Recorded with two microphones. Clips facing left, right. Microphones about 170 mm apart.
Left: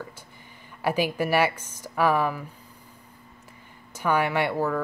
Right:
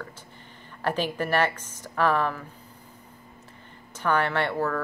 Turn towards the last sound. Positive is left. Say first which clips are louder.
# left 2 dB
turn(degrees=10)  # may be behind; listen again after turning